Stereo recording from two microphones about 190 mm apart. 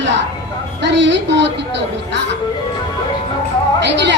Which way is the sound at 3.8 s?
65° right (ahead or behind).